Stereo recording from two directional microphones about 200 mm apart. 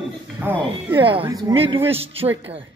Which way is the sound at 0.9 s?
25° right (ahead or behind).